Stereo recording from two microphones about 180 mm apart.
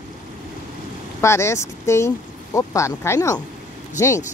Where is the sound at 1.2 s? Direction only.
15° left (ahead or behind).